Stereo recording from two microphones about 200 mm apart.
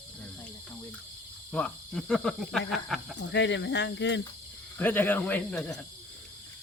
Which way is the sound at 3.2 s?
60° left (ahead or behind).